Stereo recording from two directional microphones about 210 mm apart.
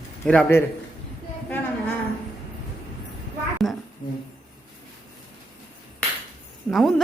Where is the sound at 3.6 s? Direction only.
Centre (ahead or behind).